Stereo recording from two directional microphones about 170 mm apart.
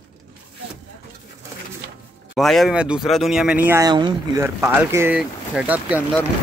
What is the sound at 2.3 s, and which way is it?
Speech, centre (ahead or behind).